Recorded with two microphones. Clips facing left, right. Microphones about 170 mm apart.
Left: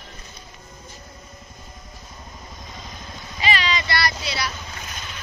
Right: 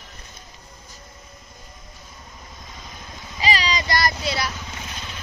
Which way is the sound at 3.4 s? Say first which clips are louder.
Even; 35° right (ahead or behind).